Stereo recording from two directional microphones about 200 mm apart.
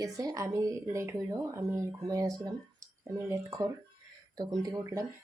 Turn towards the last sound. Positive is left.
turn(degrees=-15)  # may be behind; listen again after turning